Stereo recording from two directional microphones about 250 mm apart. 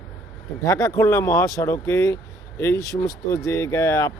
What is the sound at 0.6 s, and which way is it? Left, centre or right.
Speech, centre.